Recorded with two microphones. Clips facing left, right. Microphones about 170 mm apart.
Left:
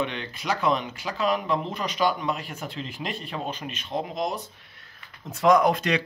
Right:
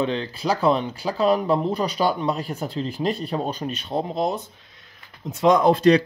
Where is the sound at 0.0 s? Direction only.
30° right (ahead or behind).